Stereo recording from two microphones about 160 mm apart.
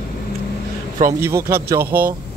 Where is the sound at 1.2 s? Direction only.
15° right (ahead or behind).